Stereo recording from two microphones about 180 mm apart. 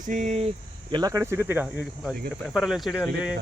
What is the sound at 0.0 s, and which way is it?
Speech, 45° right (ahead or behind).